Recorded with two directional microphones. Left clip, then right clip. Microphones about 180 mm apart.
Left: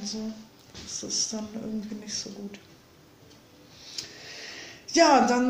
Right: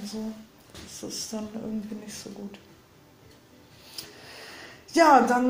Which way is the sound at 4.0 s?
10° left (ahead or behind).